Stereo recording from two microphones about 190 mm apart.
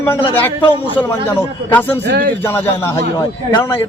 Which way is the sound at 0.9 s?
10° left (ahead or behind).